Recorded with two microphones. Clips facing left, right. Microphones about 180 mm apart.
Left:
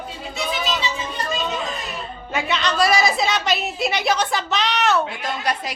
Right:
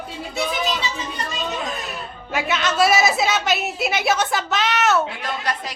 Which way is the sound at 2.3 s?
5° right (ahead or behind).